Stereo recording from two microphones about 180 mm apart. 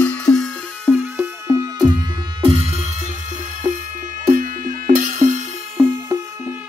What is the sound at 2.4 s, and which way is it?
Music, 30° right (ahead or behind).